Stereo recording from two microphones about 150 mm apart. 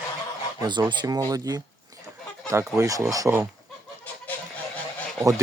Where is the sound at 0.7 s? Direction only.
30° right (ahead or behind).